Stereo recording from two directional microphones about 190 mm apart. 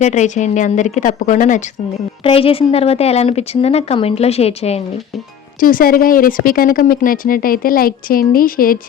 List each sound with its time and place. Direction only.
0.0 s a woman's voice: 40° left (ahead or behind)
2.2 s a woman's voice: 30° left (ahead or behind)
5.5 s speech: 45° left (ahead or behind)